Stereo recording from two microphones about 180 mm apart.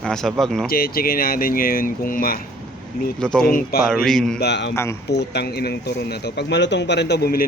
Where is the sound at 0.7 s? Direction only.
55° left (ahead or behind).